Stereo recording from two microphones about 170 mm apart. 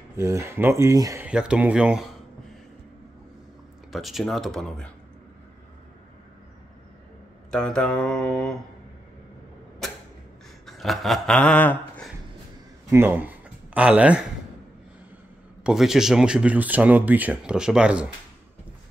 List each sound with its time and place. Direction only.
0.1 s speech: 15° right (ahead or behind)
1.2 s speech: 5° right (ahead or behind)
3.9 s speech: centre (ahead or behind)
7.5 s speech: 5° left (ahead or behind)
10.7 s a sound: centre (ahead or behind)
12.9 s speech: 10° right (ahead or behind)
15.6 s speech: 5° right (ahead or behind)